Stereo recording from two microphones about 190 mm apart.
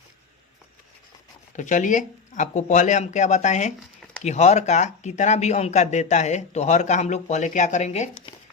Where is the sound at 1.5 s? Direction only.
40° left (ahead or behind).